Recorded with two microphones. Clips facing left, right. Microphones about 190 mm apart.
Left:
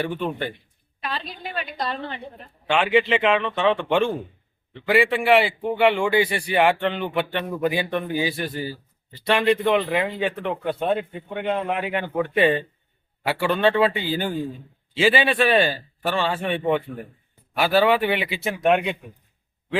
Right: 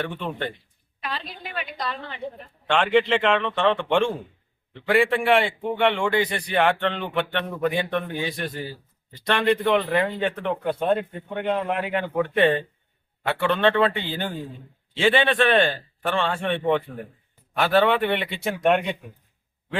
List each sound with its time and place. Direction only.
0.0 s speech: 5° left (ahead or behind)
1.0 s a woman's voice: 30° left (ahead or behind)
2.6 s a man's voice: 5° left (ahead or behind)